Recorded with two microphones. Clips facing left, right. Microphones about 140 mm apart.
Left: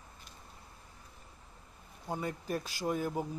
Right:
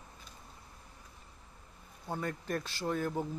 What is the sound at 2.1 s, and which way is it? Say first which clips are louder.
A man's voice: even; 10° left (ahead or behind).